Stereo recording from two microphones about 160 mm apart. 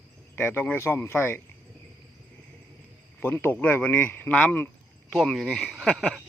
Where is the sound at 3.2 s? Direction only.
15° left (ahead or behind).